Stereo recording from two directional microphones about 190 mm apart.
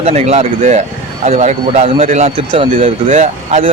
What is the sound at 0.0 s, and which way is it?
A man's voice, 35° right (ahead or behind).